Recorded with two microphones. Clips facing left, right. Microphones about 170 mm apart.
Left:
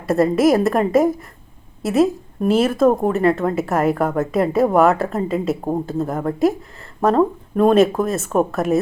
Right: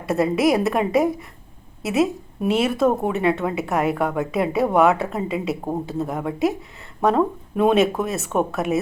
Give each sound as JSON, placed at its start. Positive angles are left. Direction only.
{"t": 0.1, "sound": "speech", "side_deg": 0}